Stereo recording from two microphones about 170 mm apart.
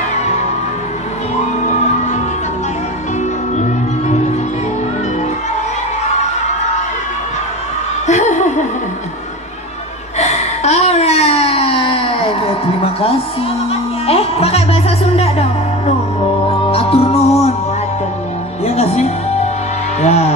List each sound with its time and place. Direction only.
8.1 s laughter: 45° left (ahead or behind)
10.1 s a sound: 40° left (ahead or behind)
13.7 s music: 35° left (ahead or behind)
18.7 s music: 40° left (ahead or behind)